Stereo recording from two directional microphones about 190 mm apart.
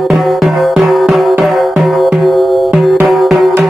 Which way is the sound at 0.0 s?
Centre (ahead or behind).